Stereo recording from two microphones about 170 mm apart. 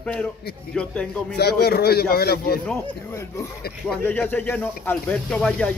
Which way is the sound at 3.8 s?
10° left (ahead or behind).